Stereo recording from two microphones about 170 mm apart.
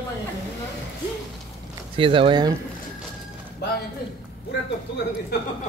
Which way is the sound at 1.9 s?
30° right (ahead or behind).